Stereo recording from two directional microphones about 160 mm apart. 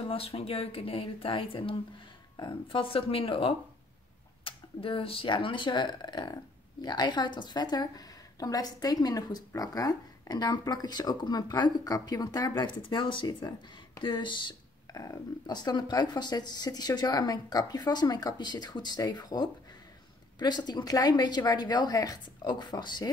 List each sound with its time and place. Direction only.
0.1 s speech: 35° left (ahead or behind)